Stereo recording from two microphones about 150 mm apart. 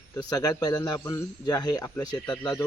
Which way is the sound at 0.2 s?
25° left (ahead or behind).